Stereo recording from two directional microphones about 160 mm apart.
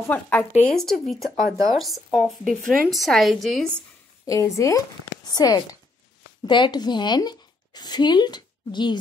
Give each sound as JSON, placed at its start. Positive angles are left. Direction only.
{"t": 0.1, "sound": "a woman's voice", "side_deg": 10}
{"t": 4.3, "sound": "a woman's voice", "side_deg": 20}